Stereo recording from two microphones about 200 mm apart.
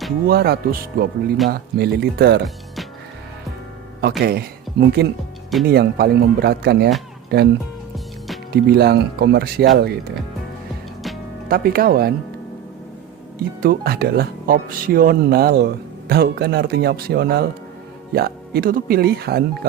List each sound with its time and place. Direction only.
0.3 s speech: 50° right (ahead or behind)
4.2 s speech: 50° right (ahead or behind)
8.6 s speech: 50° right (ahead or behind)
11.4 s speech: 45° right (ahead or behind)
13.6 s speech: 50° right (ahead or behind)